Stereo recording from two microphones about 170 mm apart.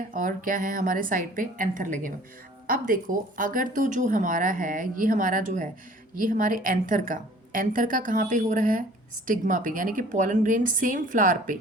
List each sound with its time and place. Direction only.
0.1 s speech: 50° right (ahead or behind)